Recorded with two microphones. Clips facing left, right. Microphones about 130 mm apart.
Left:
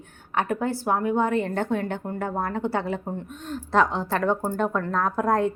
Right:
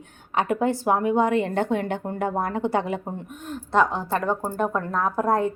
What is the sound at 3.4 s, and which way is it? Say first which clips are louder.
A woman's voice: right 1 dB; centre (ahead or behind).